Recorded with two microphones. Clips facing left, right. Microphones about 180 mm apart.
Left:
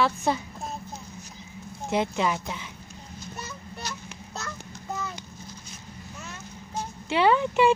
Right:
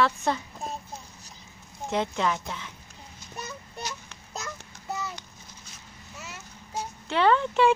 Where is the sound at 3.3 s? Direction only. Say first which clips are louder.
Right 4 dB; 15° right (ahead or behind).